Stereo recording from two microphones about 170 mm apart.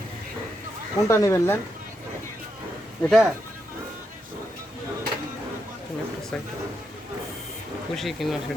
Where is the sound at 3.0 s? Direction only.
Centre (ahead or behind).